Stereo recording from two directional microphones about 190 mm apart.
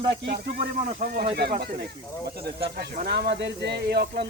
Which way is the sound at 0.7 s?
50° right (ahead or behind).